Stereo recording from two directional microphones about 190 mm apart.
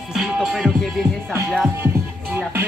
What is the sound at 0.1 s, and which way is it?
Music, centre (ahead or behind).